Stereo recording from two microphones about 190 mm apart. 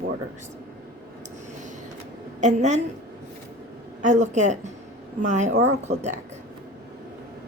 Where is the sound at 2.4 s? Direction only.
40° right (ahead or behind).